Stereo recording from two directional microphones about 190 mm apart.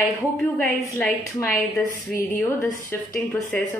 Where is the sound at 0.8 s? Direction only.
15° left (ahead or behind).